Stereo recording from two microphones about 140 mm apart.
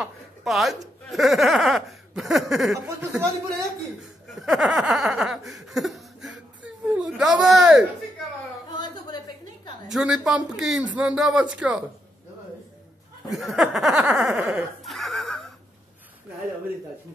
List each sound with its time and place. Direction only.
0.0 s a sound: centre (ahead or behind)
1.1 s snicker: centre (ahead or behind)
2.7 s speech: 20° right (ahead or behind)
4.3 s snicker: centre (ahead or behind)
8.7 s a sound: 30° left (ahead or behind)
9.8 s snicker: 5° right (ahead or behind)
13.3 s snicker: centre (ahead or behind)